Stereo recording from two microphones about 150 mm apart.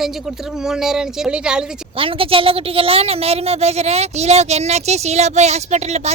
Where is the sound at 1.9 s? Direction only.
35° right (ahead or behind).